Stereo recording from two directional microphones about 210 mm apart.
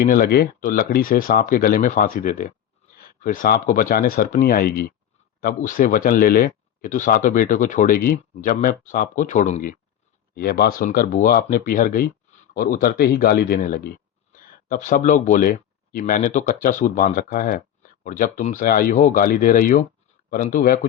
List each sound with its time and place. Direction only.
0.1 s speech: 45° left (ahead or behind)